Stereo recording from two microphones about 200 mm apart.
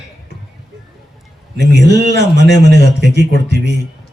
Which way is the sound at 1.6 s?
55° right (ahead or behind).